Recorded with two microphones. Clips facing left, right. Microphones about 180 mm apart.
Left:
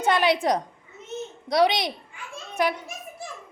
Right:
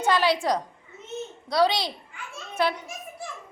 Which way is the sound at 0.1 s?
20° left (ahead or behind).